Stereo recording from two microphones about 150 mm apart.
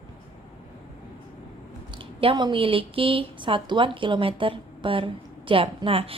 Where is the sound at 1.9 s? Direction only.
35° right (ahead or behind).